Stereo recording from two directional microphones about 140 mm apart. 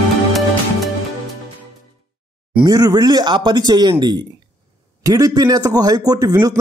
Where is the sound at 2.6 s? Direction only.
25° right (ahead or behind).